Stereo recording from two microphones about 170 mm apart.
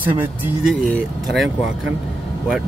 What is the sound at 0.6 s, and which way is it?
Speech, centre (ahead or behind).